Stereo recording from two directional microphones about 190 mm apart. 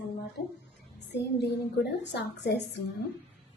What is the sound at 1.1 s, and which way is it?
A woman's voice, 60° left (ahead or behind).